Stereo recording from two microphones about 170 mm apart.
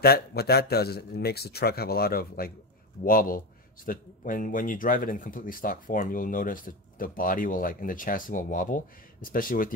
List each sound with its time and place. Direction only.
0.0 s a man's voice: 65° left (ahead or behind)